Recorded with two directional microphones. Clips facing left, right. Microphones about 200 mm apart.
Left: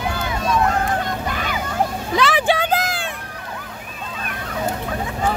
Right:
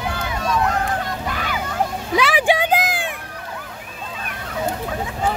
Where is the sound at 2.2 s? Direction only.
10° right (ahead or behind).